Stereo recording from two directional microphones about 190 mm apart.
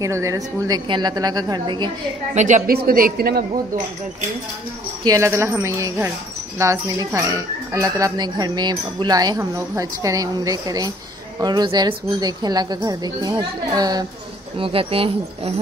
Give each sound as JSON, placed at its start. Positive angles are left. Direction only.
{"t": 0.0, "sound": "speech", "side_deg": -15}
{"t": 2.3, "sound": "speech", "side_deg": -40}
{"t": 5.0, "sound": "speech", "side_deg": -15}